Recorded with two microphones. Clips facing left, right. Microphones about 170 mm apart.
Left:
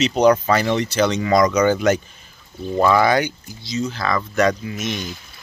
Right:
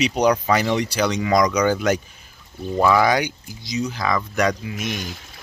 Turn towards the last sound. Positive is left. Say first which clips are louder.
# left 2 dB
turn(degrees=-10)  # may be behind; listen again after turning